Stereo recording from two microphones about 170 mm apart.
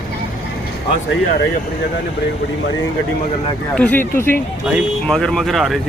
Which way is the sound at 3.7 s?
10° left (ahead or behind).